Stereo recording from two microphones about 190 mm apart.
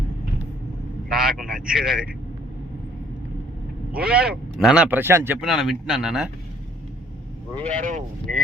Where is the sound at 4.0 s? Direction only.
5° right (ahead or behind).